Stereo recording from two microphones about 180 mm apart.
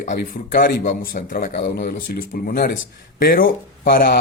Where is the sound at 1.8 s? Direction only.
50° left (ahead or behind).